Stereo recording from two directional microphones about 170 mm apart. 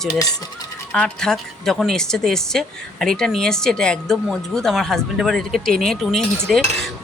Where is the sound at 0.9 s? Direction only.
5° left (ahead or behind).